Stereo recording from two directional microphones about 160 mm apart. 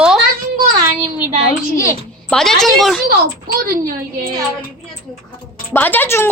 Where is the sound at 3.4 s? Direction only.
65° right (ahead or behind).